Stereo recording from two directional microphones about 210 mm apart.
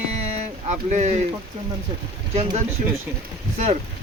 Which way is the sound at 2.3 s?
30° right (ahead or behind).